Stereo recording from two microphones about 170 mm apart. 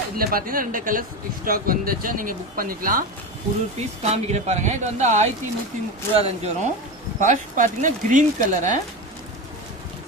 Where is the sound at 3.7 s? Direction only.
40° right (ahead or behind).